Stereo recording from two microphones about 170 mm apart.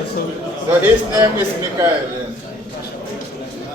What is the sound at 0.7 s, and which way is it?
A man's voice, 10° right (ahead or behind).